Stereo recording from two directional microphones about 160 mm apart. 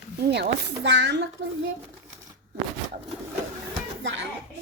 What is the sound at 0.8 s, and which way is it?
Speech, 90° right.